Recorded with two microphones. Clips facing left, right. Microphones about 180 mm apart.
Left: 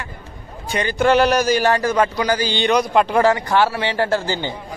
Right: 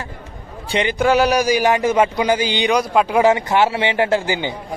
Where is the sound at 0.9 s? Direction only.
5° right (ahead or behind).